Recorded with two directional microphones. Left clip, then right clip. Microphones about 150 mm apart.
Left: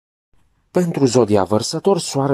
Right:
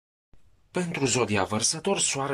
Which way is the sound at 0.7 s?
45° left (ahead or behind).